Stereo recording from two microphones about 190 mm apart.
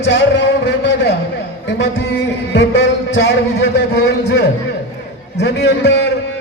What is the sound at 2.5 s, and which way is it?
A man's voice, 65° left (ahead or behind).